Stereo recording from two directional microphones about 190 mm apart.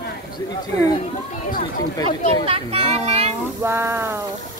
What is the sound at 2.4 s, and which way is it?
Child singing, 30° right (ahead or behind).